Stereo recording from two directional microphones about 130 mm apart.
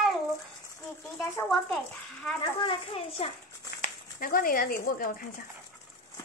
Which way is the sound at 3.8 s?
90° left.